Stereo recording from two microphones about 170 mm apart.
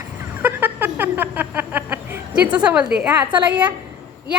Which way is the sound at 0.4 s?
10° right (ahead or behind).